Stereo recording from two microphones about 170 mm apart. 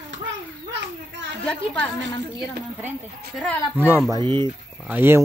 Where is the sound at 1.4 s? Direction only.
5° left (ahead or behind).